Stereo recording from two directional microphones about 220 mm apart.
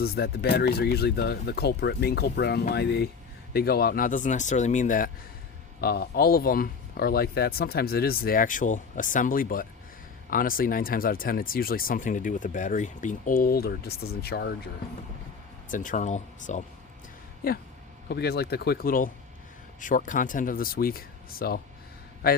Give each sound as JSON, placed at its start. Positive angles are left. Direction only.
{"t": 0.0, "sound": "speech", "side_deg": 45}
{"t": 15.7, "sound": "speech", "side_deg": 35}
{"t": 18.1, "sound": "speech", "side_deg": 45}